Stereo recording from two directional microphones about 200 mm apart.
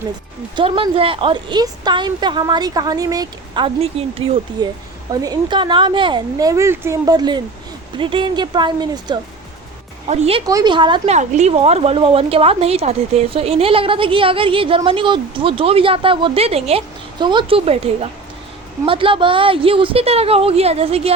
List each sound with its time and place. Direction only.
0.5 s speech: 25° right (ahead or behind)
10.1 s speech: 30° right (ahead or behind)
10.4 s speech: 20° right (ahead or behind)